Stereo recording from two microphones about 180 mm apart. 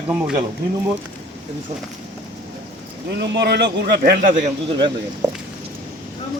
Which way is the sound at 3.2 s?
70° right (ahead or behind).